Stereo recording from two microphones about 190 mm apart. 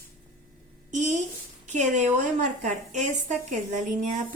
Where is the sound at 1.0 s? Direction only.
40° right (ahead or behind).